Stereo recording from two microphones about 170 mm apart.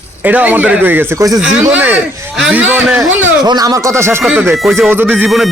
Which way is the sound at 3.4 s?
25° right (ahead or behind).